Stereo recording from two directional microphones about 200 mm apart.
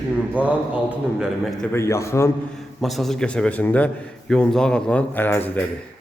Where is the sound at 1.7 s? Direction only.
15° left (ahead or behind).